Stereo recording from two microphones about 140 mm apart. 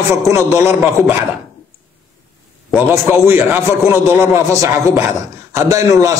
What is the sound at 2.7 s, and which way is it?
A man's voice, 15° right (ahead or behind).